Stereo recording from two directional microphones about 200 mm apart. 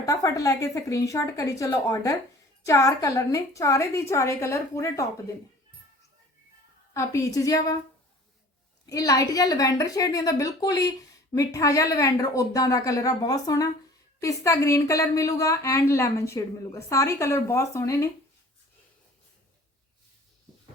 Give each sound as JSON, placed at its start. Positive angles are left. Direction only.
{"t": 0.0, "sound": "a woman's voice", "side_deg": 15}
{"t": 6.9, "sound": "a woman's voice", "side_deg": 15}
{"t": 8.9, "sound": "a woman's voice", "side_deg": 20}